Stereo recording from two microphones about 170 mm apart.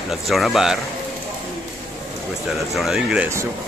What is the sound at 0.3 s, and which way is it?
Speech, centre (ahead or behind).